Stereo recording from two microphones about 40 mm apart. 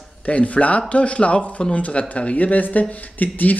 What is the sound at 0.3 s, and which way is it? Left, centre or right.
Speech, left.